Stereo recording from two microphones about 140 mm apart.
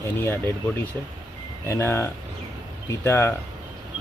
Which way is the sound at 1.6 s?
20° left (ahead or behind).